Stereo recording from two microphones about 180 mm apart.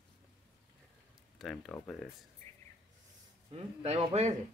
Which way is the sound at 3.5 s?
35° right (ahead or behind).